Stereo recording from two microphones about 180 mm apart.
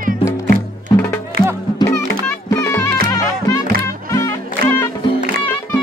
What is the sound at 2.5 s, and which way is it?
Music, 15° left (ahead or behind).